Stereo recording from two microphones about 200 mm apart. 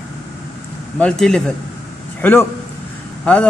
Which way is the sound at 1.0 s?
5° left (ahead or behind).